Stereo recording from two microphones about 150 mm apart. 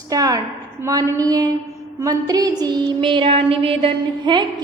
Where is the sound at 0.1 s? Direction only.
25° right (ahead or behind).